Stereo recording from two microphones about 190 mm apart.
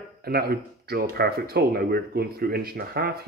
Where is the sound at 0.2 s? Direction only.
55° right (ahead or behind).